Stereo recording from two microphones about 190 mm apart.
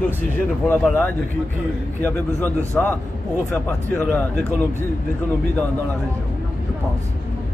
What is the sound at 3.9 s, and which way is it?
Speech, 10° left (ahead or behind).